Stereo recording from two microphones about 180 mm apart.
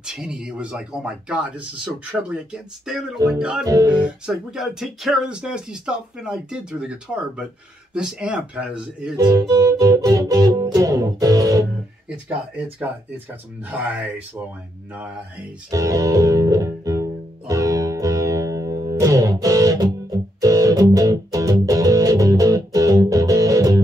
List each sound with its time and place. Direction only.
0.0 s speech: 5° right (ahead or behind)
3.6 s music: 20° right (ahead or behind)
4.3 s speech: centre (ahead or behind)
9.1 s music: 20° right (ahead or behind)
13.7 s speech: 10° right (ahead or behind)
15.7 s music: 20° right (ahead or behind)